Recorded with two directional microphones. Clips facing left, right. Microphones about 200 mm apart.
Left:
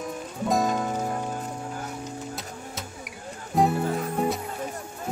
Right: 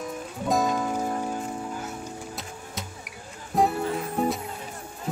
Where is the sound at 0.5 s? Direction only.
Centre (ahead or behind).